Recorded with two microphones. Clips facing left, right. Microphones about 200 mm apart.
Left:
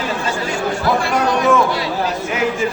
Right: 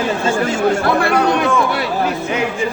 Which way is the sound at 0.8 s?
60° right (ahead or behind).